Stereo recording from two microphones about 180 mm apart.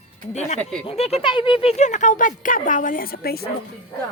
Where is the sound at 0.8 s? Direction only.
35° left (ahead or behind); by 3.5 s 60° left (ahead or behind).